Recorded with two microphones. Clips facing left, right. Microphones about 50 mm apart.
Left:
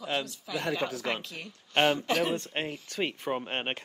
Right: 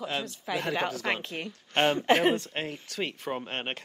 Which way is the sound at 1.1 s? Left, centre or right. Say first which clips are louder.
Right 3 dB; right.